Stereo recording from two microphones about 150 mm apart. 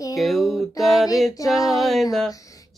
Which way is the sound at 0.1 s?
Centre (ahead or behind).